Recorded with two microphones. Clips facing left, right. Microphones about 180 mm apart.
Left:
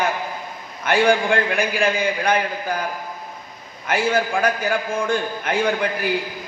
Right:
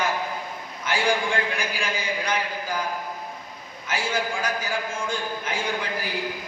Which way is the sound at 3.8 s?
60° left (ahead or behind).